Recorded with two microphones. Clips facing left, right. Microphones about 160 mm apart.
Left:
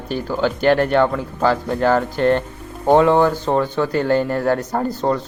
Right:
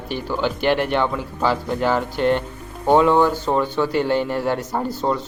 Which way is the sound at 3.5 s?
45° left (ahead or behind).